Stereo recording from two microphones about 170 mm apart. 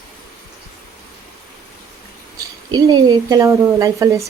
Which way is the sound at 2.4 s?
20° right (ahead or behind).